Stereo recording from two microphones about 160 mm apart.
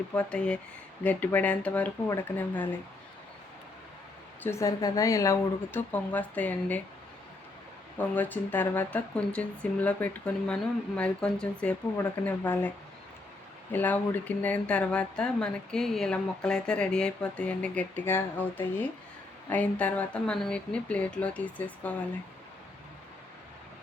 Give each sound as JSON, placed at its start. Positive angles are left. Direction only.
{"t": 0.1, "sound": "speech", "side_deg": 5}
{"t": 4.4, "sound": "speech", "side_deg": 20}
{"t": 7.9, "sound": "speech", "side_deg": 10}
{"t": 13.7, "sound": "speech", "side_deg": 10}